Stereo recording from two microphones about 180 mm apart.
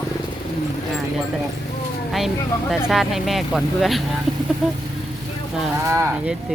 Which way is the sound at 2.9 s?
Centre (ahead or behind).